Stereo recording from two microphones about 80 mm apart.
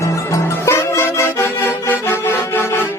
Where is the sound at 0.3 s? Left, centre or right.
Left.